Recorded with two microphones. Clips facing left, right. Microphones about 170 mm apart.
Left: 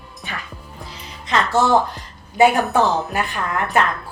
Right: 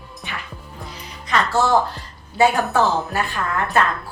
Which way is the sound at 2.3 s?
15° left (ahead or behind).